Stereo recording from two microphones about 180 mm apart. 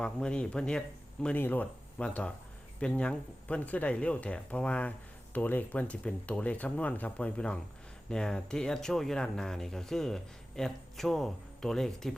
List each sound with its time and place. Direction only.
0.0 s speech: 5° left (ahead or behind)